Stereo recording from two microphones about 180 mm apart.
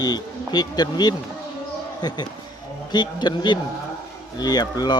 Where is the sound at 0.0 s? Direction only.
20° left (ahead or behind).